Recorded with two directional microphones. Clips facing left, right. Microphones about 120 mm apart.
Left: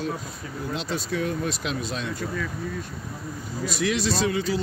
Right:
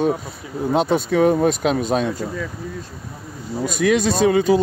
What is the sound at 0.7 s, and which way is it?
Speech, 50° right (ahead or behind).